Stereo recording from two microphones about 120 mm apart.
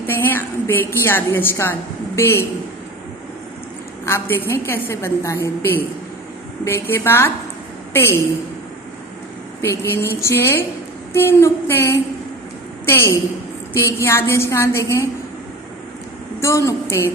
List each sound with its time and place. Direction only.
0.1 s a woman's voice: 20° left (ahead or behind)
4.0 s a woman's voice: 20° left (ahead or behind)
9.6 s a woman's voice: 20° left (ahead or behind)
16.4 s a woman's voice: 25° left (ahead or behind)